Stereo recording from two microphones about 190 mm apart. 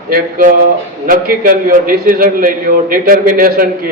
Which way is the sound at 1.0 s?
50° right (ahead or behind).